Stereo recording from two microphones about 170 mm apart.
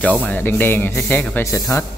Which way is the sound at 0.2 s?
10° left (ahead or behind).